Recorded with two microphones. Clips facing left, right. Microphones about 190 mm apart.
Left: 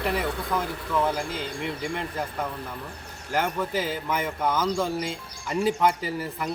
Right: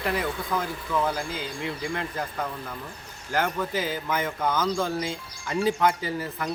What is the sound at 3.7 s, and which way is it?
Speech, 30° left (ahead or behind).